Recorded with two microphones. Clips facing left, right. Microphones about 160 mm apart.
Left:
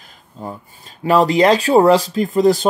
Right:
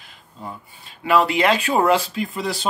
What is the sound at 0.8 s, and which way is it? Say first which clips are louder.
Speech: left 4 dB; 40° left (ahead or behind).